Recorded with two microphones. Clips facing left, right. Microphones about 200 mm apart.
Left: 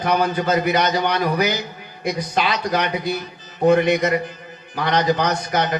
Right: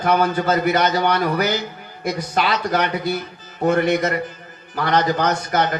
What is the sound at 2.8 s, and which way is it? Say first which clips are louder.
A man's voice: right 1 dB; 15° left (ahead or behind).